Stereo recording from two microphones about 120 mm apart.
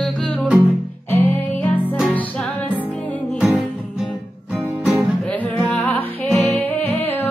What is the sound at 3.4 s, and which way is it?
Music, 5° right (ahead or behind).